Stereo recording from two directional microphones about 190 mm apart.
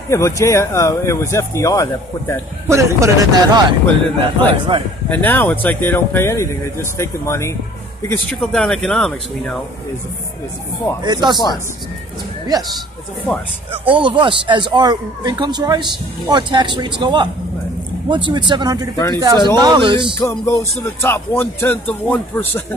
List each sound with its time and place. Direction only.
0.1 s speech: 15° left (ahead or behind)
2.7 s speech: 15° right (ahead or behind)
3.8 s speech: 10° left (ahead or behind)
4.5 s a man's voice: 25° right (ahead or behind)
5.1 s speech: 10° left (ahead or behind)
8.1 s speech: 5° left (ahead or behind)
11.1 s a man's voice: 20° right (ahead or behind)
12.4 s a man's voice: 20° right (ahead or behind)
20.2 s speech: 15° left (ahead or behind)